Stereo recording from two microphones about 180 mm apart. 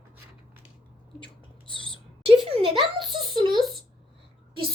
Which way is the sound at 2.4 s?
30° right (ahead or behind).